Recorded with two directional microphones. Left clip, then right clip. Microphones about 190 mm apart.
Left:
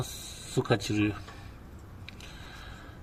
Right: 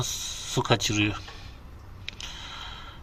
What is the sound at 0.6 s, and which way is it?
Speech, 15° right (ahead or behind).